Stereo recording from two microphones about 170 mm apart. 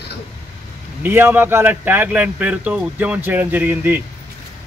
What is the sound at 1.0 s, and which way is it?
Speech, 15° right (ahead or behind).